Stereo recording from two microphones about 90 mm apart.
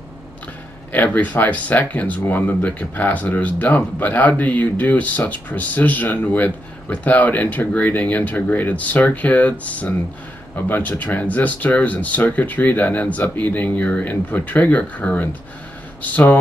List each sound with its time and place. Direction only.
0.9 s speech: 20° left (ahead or behind)